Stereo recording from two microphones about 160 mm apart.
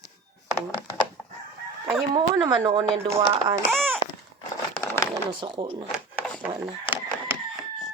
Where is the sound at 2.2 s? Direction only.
25° right (ahead or behind).